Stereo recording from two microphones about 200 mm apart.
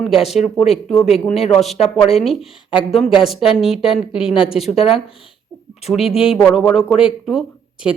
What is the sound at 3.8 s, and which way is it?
Speech, 25° left (ahead or behind).